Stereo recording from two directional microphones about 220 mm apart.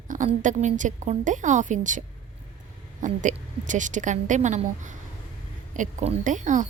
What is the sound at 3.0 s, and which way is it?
Speech, 35° right (ahead or behind).